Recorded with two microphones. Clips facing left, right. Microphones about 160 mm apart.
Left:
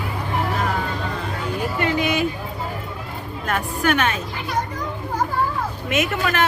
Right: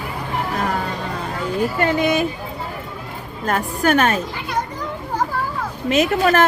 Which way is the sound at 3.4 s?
40° right (ahead or behind).